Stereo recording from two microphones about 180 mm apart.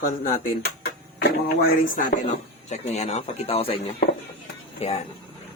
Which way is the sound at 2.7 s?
40° left (ahead or behind).